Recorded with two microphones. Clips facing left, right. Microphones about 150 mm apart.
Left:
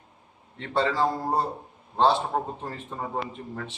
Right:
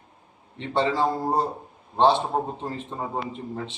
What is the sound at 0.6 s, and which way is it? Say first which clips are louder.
A man's voice: right 1 dB; 20° right (ahead or behind).